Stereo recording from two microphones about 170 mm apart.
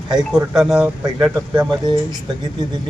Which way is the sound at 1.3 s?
20° right (ahead or behind).